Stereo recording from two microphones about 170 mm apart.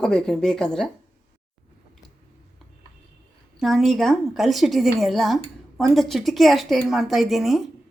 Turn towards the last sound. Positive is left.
turn(degrees=0)  # may be behind; listen again after turning